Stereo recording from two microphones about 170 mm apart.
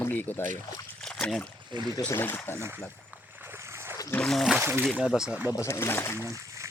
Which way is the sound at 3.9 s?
20° left (ahead or behind).